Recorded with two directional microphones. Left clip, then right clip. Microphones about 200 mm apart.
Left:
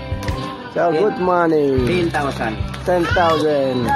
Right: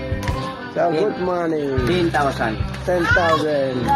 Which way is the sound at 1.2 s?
25° left (ahead or behind).